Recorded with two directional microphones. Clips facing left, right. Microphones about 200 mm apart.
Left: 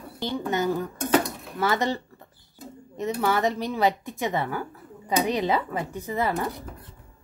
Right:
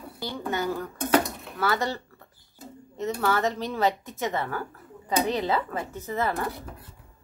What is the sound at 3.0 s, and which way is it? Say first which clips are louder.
Speech: left 1 dB; 15° left (ahead or behind).